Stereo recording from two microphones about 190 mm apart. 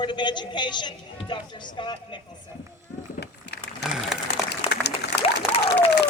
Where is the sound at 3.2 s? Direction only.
60° left (ahead or behind).